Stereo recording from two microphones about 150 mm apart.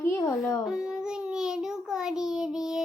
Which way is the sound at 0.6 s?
5° right (ahead or behind).